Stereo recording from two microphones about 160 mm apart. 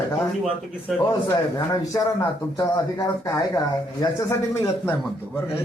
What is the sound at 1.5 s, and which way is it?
A man's voice, 20° left (ahead or behind).